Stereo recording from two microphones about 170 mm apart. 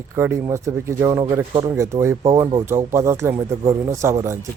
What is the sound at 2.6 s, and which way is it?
A man's voice, 15° right (ahead or behind).